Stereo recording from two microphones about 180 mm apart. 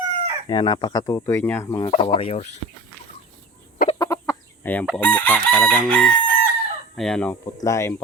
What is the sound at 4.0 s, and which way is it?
Chicken, 15° left (ahead or behind).